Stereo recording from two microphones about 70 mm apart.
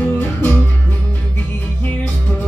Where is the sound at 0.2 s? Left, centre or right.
Left.